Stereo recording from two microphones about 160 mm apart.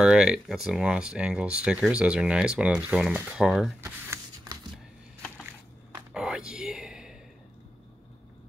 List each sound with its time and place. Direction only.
0.0 s speech: 5° right (ahead or behind)
3.8 s shuffling cards: 15° right (ahead or behind)
6.1 s a sound: 5° right (ahead or behind)